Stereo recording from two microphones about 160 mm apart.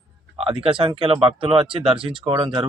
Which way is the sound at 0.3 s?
35° right (ahead or behind).